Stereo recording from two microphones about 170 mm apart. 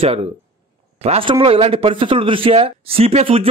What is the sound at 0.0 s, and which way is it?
A man's voice, 35° right (ahead or behind).